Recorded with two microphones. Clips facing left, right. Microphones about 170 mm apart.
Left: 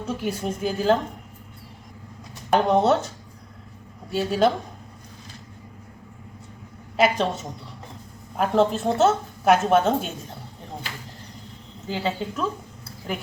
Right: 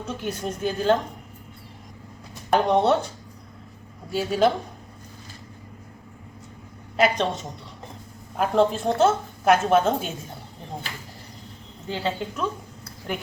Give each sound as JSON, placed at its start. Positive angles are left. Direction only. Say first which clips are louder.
{"t": 0.0, "sound": "speech", "louder": "left 2 dB", "side_deg": 10}
{"t": 2.5, "sound": "a woman's voice", "louder": "left 1 dB", "side_deg": 0}
{"t": 4.1, "sound": "a woman's voice", "louder": "even", "side_deg": 0}
{"t": 6.9, "sound": "a woman's voice", "louder": "left 1 dB", "side_deg": 5}
{"t": 11.9, "sound": "a woman's voice", "louder": "left 1 dB", "side_deg": 5}